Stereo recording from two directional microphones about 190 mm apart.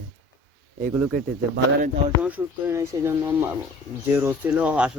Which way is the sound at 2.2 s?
10° right (ahead or behind).